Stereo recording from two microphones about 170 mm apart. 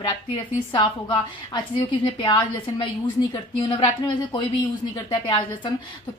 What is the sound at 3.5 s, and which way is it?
Speech, 30° left (ahead or behind).